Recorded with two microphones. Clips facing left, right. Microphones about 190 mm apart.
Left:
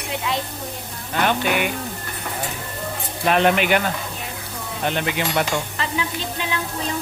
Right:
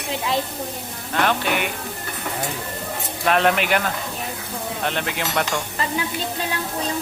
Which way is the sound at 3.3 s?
Centre (ahead or behind).